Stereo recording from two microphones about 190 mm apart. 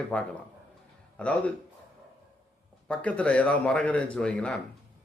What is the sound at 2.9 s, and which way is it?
Speech, 5° left (ahead or behind).